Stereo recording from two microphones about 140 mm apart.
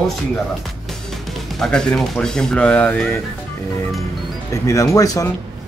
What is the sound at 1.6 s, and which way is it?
Speech, 5° left (ahead or behind).